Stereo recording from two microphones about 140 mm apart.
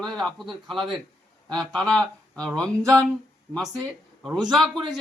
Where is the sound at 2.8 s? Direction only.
25° right (ahead or behind).